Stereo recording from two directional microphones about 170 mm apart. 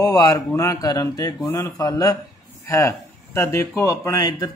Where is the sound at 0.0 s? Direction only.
20° left (ahead or behind).